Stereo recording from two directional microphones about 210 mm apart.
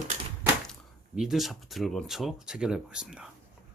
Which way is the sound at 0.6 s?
Centre (ahead or behind).